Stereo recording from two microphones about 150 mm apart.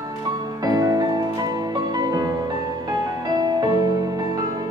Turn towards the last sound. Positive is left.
turn(degrees=-25)  # may be behind; listen again after turning